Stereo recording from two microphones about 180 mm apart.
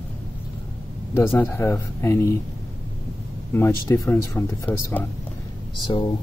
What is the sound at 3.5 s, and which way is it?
Speech, 15° left (ahead or behind).